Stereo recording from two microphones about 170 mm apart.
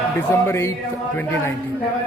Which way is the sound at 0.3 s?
15° left (ahead or behind).